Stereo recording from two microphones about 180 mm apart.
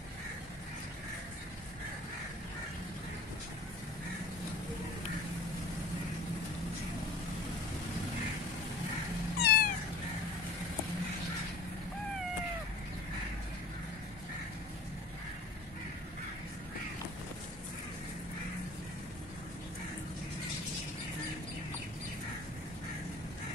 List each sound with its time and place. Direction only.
9.4 s cat: 60° left (ahead or behind)